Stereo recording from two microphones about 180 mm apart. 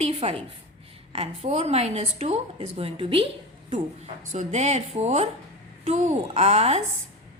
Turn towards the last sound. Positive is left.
turn(degrees=-35)  # may be behind; listen again after turning